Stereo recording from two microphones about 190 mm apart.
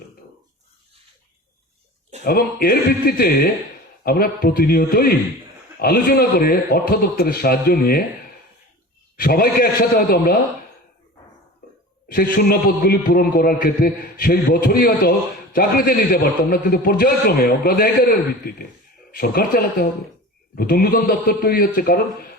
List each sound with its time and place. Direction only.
2.2 s a man's voice: 55° left (ahead or behind)
9.1 s a man's voice: 50° left (ahead or behind)
12.1 s a man's voice: 50° left (ahead or behind)
19.1 s a man's voice: 50° left (ahead or behind)